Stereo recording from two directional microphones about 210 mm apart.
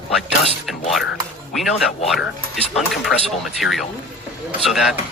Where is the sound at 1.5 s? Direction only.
Centre (ahead or behind).